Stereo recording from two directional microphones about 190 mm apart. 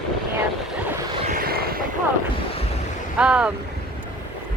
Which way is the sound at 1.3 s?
50° right (ahead or behind).